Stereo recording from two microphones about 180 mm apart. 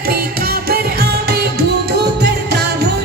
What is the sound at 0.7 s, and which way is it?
Music, 60° right (ahead or behind).